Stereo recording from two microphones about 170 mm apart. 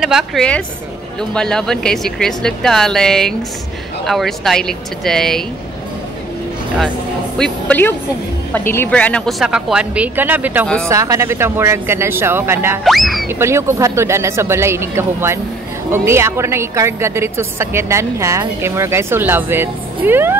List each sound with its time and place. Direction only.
0.0 s a woman's voice: centre (ahead or behind)
7.3 s a woman's voice: 5° left (ahead or behind); by 12.8 s 15° right (ahead or behind)
12.8 s speech: centre (ahead or behind)
13.3 s a woman's voice: 15° right (ahead or behind)